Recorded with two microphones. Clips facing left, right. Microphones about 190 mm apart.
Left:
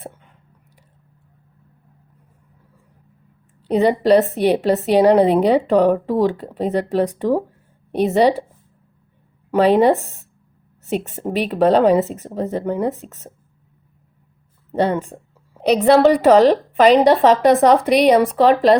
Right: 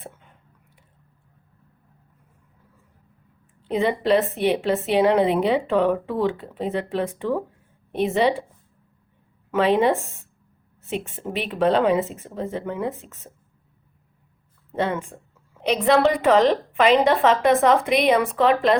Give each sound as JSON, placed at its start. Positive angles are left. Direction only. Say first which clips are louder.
{"t": 3.6, "sound": "a woman's voice", "louder": "left 6 dB", "side_deg": 40}
{"t": 9.5, "sound": "a woman's voice", "louder": "left 5 dB", "side_deg": 40}
{"t": 14.7, "sound": "a woman's voice", "louder": "left 6 dB", "side_deg": 35}